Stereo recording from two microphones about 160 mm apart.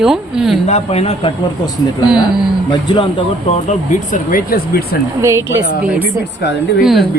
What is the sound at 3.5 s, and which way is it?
Speech, 50° left (ahead or behind).